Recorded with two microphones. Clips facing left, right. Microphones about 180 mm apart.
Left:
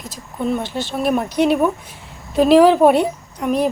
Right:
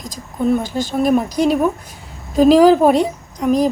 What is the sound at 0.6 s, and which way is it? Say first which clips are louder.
Speech: right 4 dB; 45° right (ahead or behind).